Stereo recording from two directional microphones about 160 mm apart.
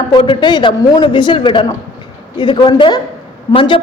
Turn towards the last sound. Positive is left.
turn(degrees=35)  # may be behind; listen again after turning